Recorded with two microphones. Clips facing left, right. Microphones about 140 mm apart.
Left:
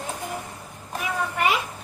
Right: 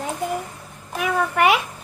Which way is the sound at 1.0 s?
65° right (ahead or behind).